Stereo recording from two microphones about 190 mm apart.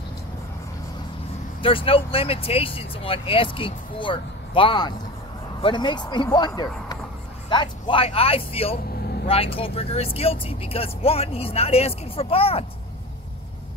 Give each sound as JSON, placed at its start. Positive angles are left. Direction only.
{"t": 1.6, "sound": "speech", "side_deg": 30}